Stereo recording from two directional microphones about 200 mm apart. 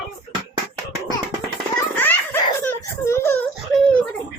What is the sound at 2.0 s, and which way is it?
Giggle, 10° left (ahead or behind).